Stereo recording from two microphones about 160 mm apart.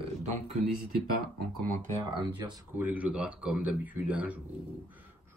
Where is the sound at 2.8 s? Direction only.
10° right (ahead or behind).